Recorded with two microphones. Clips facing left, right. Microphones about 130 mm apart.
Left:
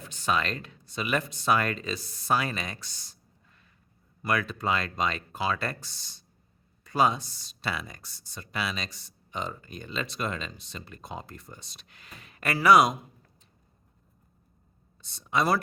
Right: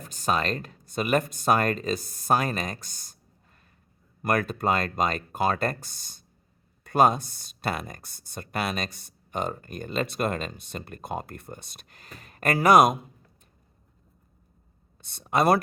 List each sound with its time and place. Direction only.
0.0 s speech: 45° right (ahead or behind)
14.9 s speech: 55° right (ahead or behind)